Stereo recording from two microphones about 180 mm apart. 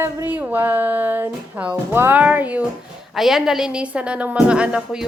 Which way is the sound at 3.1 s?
Centre (ahead or behind).